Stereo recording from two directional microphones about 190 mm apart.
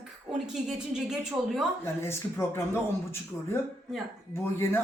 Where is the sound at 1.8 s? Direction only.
15° left (ahead or behind).